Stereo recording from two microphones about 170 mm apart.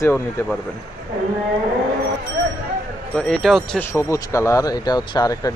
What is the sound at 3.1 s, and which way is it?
Speech, 5° left (ahead or behind).